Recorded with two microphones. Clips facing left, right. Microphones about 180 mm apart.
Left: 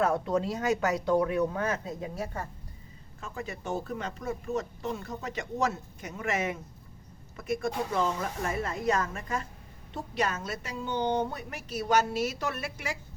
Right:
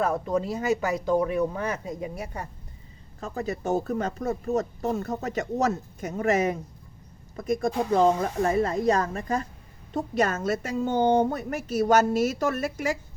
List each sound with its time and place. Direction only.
0.1 s a woman's voice: 5° right (ahead or behind)
3.2 s a woman's voice: 40° right (ahead or behind)